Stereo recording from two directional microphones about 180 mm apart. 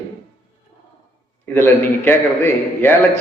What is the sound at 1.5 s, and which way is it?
A man's voice, 10° left (ahead or behind).